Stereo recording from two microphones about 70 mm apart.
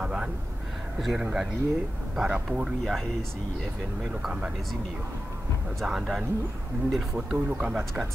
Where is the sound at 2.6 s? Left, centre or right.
Centre.